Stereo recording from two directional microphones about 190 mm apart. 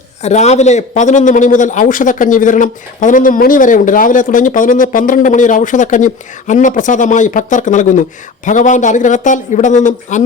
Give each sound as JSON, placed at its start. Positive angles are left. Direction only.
{"t": 0.2, "sound": "a man's voice", "side_deg": 35}